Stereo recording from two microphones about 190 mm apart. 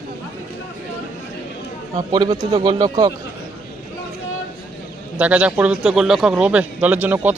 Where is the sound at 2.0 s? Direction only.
25° right (ahead or behind).